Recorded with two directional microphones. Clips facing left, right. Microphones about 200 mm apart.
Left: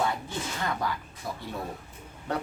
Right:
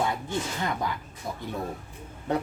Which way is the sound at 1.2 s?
20° right (ahead or behind).